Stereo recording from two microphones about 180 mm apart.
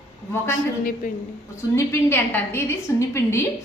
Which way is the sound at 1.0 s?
50° left (ahead or behind).